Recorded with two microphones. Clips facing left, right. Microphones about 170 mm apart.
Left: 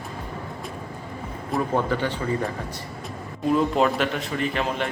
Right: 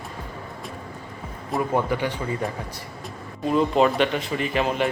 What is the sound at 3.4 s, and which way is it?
A man's voice, centre (ahead or behind).